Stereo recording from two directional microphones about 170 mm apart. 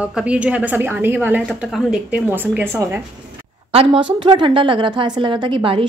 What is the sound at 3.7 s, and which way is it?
A woman's voice, 35° right (ahead or behind).